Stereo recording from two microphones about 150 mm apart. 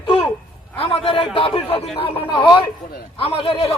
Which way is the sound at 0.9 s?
40° left (ahead or behind).